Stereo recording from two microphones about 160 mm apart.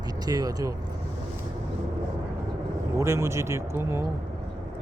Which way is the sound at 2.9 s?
15° right (ahead or behind).